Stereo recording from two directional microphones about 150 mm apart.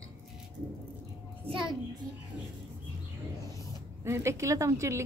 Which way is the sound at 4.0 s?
20° right (ahead or behind).